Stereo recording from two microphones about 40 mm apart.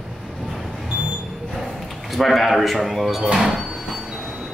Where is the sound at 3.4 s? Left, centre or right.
Centre.